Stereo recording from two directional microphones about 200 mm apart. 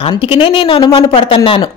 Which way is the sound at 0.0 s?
25° left (ahead or behind).